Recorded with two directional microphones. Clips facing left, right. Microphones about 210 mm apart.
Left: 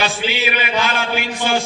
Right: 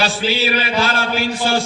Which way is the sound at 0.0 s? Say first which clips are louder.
Right 2 dB; 35° right (ahead or behind).